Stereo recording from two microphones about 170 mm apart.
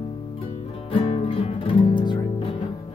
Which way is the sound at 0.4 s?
35° left (ahead or behind).